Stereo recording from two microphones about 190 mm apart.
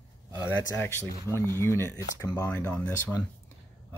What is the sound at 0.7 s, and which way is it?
Speech, 15° left (ahead or behind).